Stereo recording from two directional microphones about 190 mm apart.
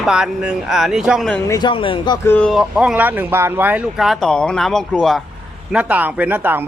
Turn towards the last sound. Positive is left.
turn(degrees=-10)  # may be behind; listen again after turning